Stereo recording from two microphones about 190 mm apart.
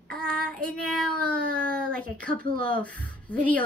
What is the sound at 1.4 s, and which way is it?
Speech, 50° right (ahead or behind).